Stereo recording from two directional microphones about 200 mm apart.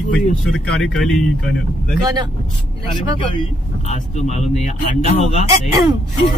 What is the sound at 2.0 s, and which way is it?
Speech, 20° right (ahead or behind).